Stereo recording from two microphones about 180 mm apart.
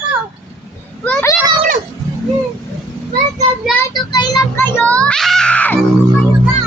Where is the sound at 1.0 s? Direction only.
10° left (ahead or behind).